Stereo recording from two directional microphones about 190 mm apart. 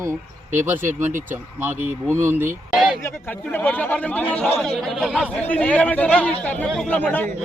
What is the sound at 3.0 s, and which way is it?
Speech, 10° left (ahead or behind).